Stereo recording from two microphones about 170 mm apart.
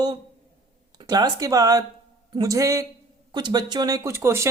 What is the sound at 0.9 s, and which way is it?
Speech, 20° right (ahead or behind).